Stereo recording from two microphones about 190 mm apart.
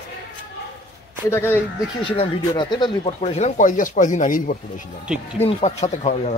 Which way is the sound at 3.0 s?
35° left (ahead or behind).